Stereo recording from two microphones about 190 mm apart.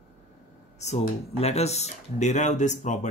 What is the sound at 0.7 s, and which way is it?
Speech, 35° left (ahead or behind).